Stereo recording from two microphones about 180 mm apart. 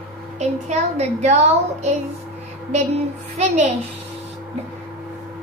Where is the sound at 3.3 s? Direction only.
35° right (ahead or behind).